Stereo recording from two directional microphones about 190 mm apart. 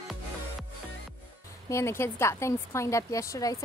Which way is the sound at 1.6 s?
15° left (ahead or behind).